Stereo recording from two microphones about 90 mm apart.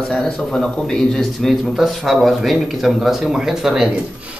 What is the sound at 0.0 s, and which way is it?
A man's voice, 5° left (ahead or behind).